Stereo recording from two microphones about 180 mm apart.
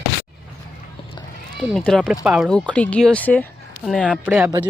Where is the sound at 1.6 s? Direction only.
5° left (ahead or behind).